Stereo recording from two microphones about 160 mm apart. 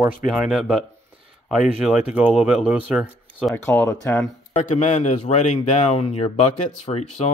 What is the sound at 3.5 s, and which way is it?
Speech, 15° left (ahead or behind).